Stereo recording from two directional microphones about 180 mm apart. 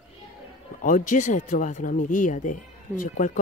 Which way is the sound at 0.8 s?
45° left (ahead or behind).